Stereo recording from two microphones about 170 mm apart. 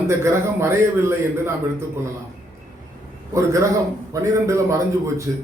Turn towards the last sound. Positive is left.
turn(degrees=-15)  # may be behind; listen again after turning